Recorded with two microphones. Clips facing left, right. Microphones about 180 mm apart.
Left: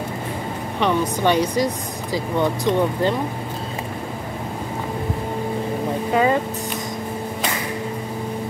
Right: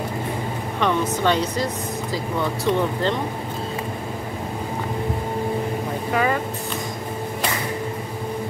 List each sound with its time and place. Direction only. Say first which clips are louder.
0.7 s speech: left 1 dB; 15° left (ahead or behind)
6.1 s speech: left 4 dB; 25° left (ahead or behind)